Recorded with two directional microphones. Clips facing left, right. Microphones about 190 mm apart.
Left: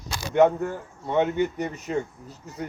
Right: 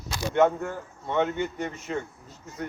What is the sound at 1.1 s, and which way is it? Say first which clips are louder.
Speech: left 3 dB; 15° left (ahead or behind).